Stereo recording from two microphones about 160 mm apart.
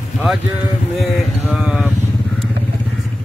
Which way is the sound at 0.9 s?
Centre (ahead or behind).